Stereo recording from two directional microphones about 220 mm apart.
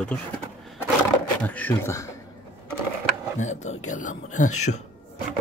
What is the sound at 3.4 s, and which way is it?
Speech, 30° left (ahead or behind).